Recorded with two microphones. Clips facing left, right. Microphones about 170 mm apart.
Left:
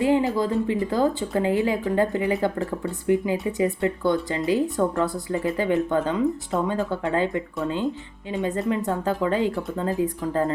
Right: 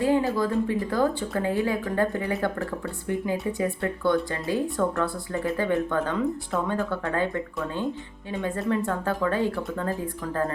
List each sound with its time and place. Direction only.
0.0 s speech: 20° left (ahead or behind)